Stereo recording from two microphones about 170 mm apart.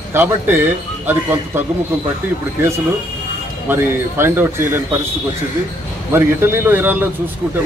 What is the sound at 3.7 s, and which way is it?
Speech, 15° right (ahead or behind).